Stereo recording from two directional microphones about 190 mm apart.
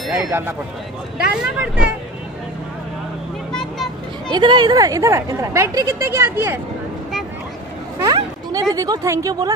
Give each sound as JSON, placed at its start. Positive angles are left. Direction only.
{"t": 0.0, "sound": "speech", "side_deg": -10}
{"t": 3.5, "sound": "vehicle", "side_deg": 0}
{"t": 4.3, "sound": "speech", "side_deg": -25}
{"t": 8.0, "sound": "speech", "side_deg": -20}